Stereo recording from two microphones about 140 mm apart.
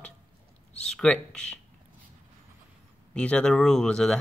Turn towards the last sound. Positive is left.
turn(degrees=5)  # may be behind; listen again after turning